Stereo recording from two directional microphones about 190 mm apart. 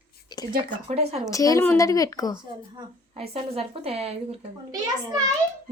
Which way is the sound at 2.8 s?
30° right (ahead or behind).